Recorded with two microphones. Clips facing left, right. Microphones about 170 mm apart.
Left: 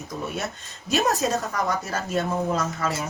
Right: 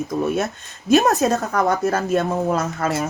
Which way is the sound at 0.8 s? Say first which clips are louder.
Right 7 dB; 60° right (ahead or behind).